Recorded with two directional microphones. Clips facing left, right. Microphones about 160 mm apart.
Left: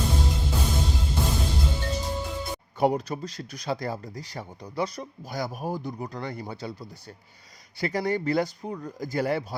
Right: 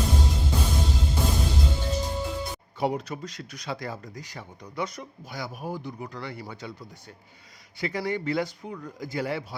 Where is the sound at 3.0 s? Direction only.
35° left (ahead or behind).